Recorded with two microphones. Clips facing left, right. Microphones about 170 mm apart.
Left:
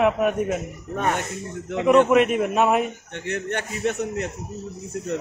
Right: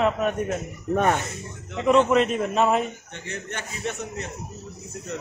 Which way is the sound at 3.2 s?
65° left (ahead or behind).